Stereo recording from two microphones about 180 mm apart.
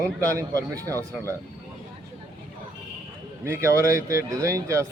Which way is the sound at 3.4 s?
15° right (ahead or behind).